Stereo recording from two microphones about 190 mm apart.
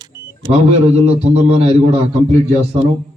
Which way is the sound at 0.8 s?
35° right (ahead or behind).